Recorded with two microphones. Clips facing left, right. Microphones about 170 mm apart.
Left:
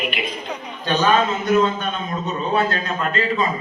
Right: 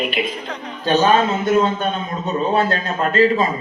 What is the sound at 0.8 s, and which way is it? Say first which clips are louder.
A man's voice: right 3 dB; 35° right (ahead or behind).